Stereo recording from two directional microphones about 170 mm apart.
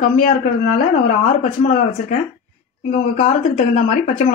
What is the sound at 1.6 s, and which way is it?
Speech, 45° left (ahead or behind).